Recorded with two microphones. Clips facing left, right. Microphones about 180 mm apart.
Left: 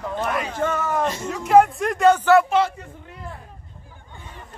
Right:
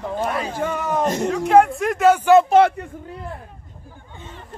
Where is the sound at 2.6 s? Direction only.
50° right (ahead or behind).